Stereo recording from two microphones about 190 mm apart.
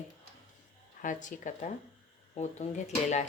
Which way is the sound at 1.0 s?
40° left (ahead or behind).